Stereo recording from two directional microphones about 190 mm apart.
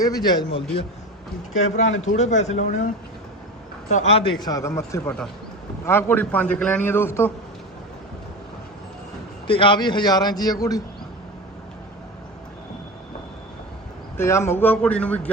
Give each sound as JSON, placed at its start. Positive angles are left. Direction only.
{"t": 0.0, "sound": "a man's voice", "side_deg": 20}
{"t": 1.6, "sound": "a man's voice", "side_deg": 40}
{"t": 9.5, "sound": "a man's voice", "side_deg": 25}
{"t": 14.2, "sound": "a man's voice", "side_deg": 15}